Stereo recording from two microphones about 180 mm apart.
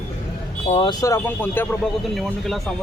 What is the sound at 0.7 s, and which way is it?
Speech, 30° left (ahead or behind).